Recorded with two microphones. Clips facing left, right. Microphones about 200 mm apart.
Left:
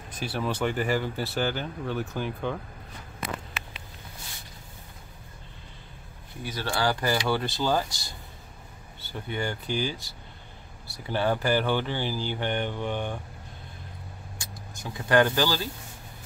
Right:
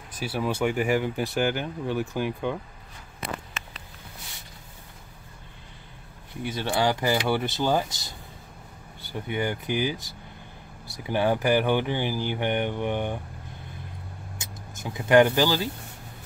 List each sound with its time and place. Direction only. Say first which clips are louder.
0.2 s speech: right 2 dB; 10° right (ahead or behind)
6.4 s speech: right 3 dB; 20° right (ahead or behind)
14.4 s speech: right 3 dB; 20° right (ahead or behind)